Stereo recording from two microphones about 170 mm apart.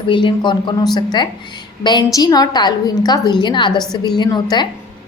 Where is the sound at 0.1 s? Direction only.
30° left (ahead or behind).